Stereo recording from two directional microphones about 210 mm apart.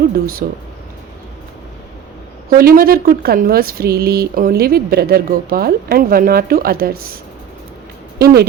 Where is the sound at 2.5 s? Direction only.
45° right (ahead or behind).